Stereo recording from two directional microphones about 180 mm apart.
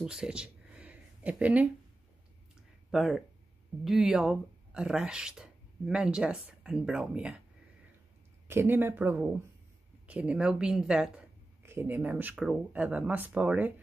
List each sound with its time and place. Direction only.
0.0 s a sound: 5° right (ahead or behind)
2.9 s speech: centre (ahead or behind)
8.5 s speech: 10° right (ahead or behind)